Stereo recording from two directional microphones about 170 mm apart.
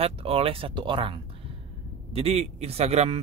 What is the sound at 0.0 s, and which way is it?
Speech, 35° right (ahead or behind).